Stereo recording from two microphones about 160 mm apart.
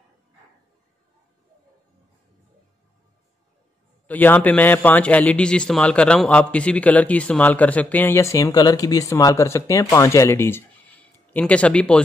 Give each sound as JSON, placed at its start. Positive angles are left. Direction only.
{"t": 4.1, "sound": "a man's voice", "side_deg": 10}